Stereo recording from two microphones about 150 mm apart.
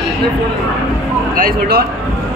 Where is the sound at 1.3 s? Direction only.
75° right (ahead or behind).